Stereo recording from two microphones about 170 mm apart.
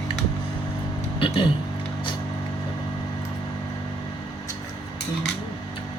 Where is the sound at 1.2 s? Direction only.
30° left (ahead or behind).